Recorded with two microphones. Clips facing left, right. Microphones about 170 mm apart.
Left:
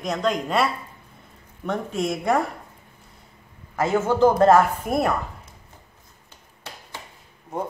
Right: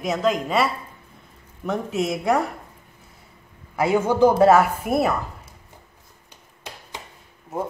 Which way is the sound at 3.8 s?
15° right (ahead or behind).